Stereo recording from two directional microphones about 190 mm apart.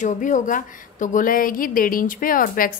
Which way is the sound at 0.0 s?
40° left (ahead or behind).